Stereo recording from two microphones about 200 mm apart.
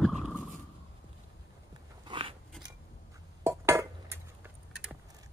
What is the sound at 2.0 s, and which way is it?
Biting, 25° right (ahead or behind).